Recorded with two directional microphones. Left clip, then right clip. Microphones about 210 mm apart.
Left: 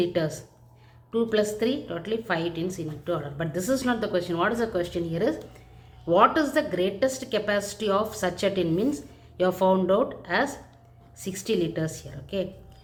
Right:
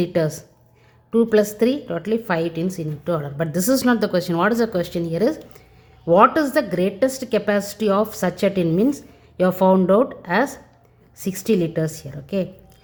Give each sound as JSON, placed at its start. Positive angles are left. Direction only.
{"t": 0.0, "sound": "speech", "side_deg": -50}